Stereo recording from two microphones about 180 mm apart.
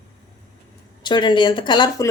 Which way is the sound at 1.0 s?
25° left (ahead or behind).